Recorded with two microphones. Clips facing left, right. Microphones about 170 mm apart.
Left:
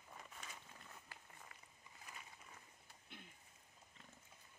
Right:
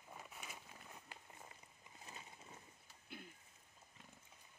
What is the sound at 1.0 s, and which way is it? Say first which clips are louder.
Run: right 3 dB; 25° right (ahead or behind).